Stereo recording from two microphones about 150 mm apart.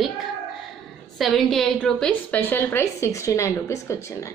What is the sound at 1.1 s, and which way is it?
A woman's voice, centre (ahead or behind).